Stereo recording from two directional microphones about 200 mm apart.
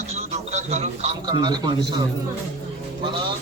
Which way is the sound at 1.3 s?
20° right (ahead or behind).